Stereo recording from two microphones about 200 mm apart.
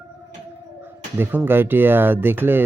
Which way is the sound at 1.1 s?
10° right (ahead or behind).